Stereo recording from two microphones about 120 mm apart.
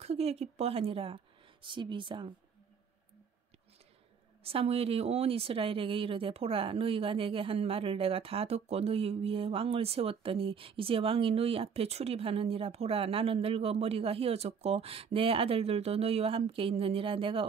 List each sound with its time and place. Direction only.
0.0 s a woman's voice: 60° right (ahead or behind); by 2.3 s 45° right (ahead or behind)
4.4 s speech: 50° right (ahead or behind)